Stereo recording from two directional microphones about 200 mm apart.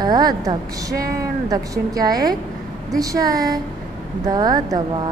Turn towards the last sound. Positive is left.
turn(degrees=-20)  # may be behind; listen again after turning